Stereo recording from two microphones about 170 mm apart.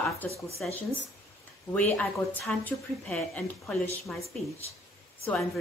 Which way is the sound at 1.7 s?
10° left (ahead or behind).